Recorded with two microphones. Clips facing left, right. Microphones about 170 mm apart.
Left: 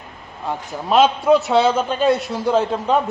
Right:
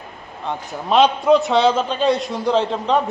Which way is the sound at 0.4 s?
Centre (ahead or behind).